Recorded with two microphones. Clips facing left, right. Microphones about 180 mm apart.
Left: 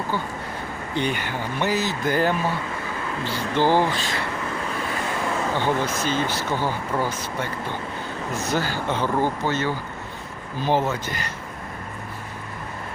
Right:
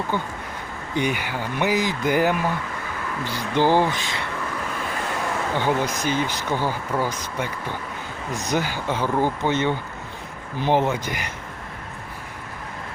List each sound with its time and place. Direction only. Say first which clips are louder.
0.9 s speech: right 1 dB; 10° right (ahead or behind)
5.5 s speech: right 3 dB; 10° right (ahead or behind)
8.4 s speech: right 1 dB; 15° right (ahead or behind)